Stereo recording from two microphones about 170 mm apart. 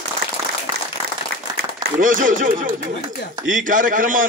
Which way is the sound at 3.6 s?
50° right (ahead or behind).